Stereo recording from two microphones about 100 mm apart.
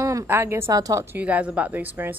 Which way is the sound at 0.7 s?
35° right (ahead or behind).